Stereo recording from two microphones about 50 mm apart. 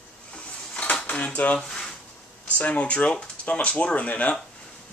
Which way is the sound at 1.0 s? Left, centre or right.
Left.